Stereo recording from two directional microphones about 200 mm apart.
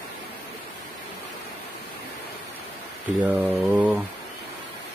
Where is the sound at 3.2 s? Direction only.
10° right (ahead or behind).